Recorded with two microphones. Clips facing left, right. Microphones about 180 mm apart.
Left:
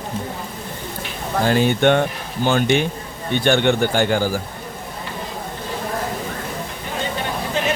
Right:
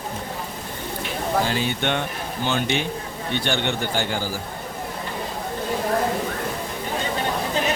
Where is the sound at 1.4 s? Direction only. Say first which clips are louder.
Left 8 dB; 50° left (ahead or behind).